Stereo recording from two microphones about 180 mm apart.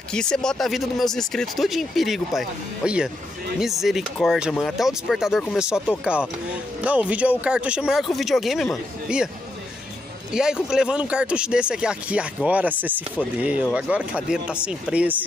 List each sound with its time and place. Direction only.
0.1 s speech: 5° left (ahead or behind)
10.3 s speech: 5° right (ahead or behind)